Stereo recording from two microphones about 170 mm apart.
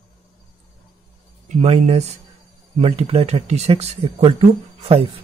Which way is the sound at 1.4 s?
35° right (ahead or behind).